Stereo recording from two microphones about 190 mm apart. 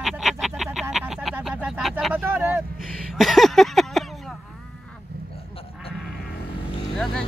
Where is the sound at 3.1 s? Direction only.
Centre (ahead or behind).